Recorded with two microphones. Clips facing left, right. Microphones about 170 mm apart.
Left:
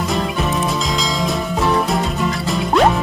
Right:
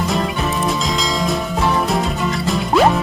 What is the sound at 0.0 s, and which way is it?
Music, centre (ahead or behind).